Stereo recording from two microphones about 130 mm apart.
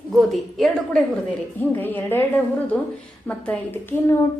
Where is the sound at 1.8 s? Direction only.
15° left (ahead or behind).